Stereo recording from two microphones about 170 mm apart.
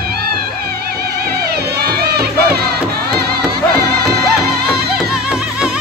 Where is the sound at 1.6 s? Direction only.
70° right (ahead or behind).